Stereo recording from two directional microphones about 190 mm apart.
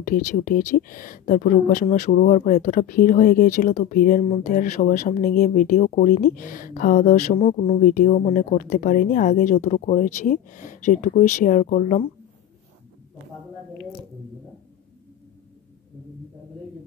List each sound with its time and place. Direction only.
0.0 s speech: 45° left (ahead or behind)